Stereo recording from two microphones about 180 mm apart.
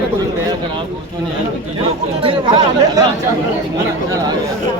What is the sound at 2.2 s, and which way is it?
Speech, 25° right (ahead or behind).